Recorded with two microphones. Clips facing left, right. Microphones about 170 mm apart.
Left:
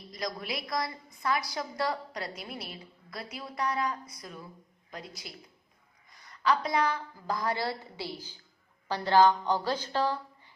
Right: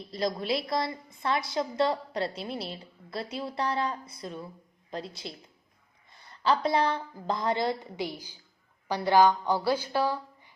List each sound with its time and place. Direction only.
0.1 s a woman's voice: 30° right (ahead or behind); by 10.5 s 10° right (ahead or behind)